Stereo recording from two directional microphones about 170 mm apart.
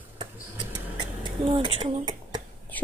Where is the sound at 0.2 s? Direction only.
25° right (ahead or behind).